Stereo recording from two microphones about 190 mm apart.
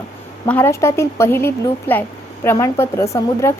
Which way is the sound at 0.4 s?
10° left (ahead or behind).